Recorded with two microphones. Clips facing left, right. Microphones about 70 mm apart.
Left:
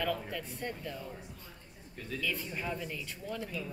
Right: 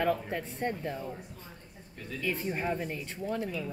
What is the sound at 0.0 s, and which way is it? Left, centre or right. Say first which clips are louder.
Speech: right 5 dB; right.